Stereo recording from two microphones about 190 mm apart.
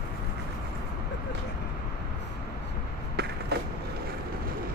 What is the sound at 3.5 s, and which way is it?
Vehicle, 55° right (ahead or behind).